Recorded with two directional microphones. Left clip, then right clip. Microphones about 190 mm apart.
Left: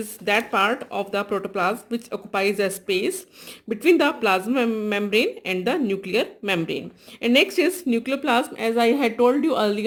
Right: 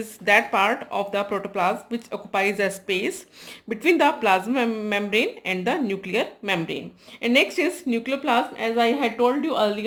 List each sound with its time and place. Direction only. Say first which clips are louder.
0.3 s a woman's voice: right 2 dB; 25° left (ahead or behind); by 9.8 s 45° left (ahead or behind)